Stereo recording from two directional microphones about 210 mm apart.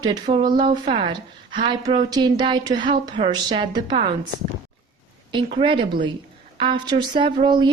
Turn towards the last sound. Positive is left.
turn(degrees=-20)  # may be behind; listen again after turning